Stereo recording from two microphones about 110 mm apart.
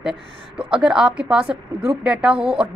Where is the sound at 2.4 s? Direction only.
55° right (ahead or behind).